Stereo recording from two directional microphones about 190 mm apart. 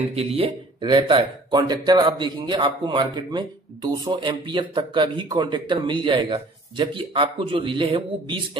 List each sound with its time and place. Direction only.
0.1 s speech: 30° right (ahead or behind)